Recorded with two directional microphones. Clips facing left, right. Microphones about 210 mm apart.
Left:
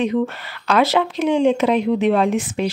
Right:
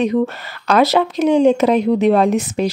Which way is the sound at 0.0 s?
40° right (ahead or behind).